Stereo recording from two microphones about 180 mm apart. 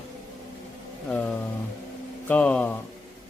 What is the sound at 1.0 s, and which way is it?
Speech, 5° left (ahead or behind).